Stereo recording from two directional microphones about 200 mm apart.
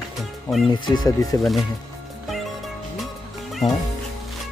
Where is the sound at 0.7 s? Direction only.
20° left (ahead or behind).